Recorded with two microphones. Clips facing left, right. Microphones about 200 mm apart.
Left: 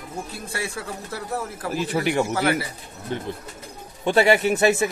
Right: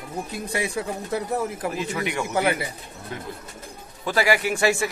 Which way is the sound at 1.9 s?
35° left (ahead or behind).